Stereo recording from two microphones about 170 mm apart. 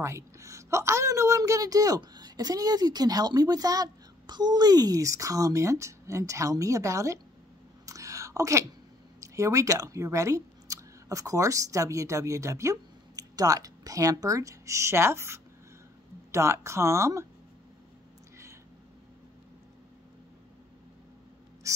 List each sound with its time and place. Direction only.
0.0 s a woman's voice: 15° right (ahead or behind)
7.8 s a sound: 20° right (ahead or behind)
9.2 s speech: 20° right (ahead or behind)
21.7 s crow: 20° right (ahead or behind)